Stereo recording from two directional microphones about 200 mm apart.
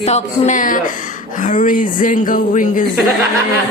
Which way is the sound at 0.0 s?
35° left (ahead or behind).